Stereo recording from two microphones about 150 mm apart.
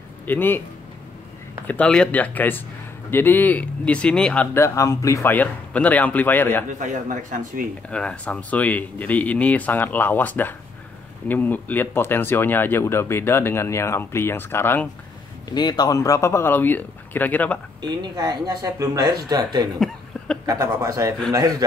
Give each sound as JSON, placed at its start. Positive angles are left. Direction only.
{"t": 0.3, "sound": "speech", "side_deg": 15}
{"t": 1.7, "sound": "speech", "side_deg": 5}
{"t": 4.6, "sound": "speech", "side_deg": 20}
{"t": 6.7, "sound": "speech", "side_deg": -55}
{"t": 7.9, "sound": "speech", "side_deg": 5}
{"t": 15.5, "sound": "speech", "side_deg": 30}
{"t": 17.8, "sound": "speech", "side_deg": -25}